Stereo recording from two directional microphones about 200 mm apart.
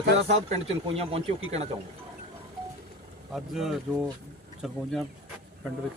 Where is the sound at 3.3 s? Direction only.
Centre (ahead or behind).